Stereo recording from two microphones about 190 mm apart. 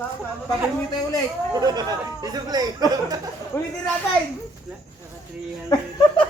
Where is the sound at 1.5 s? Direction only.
20° right (ahead or behind).